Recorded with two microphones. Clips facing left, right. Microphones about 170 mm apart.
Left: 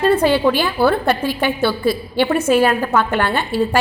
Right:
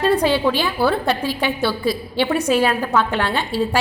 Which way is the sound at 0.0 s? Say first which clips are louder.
Left 3 dB; centre (ahead or behind).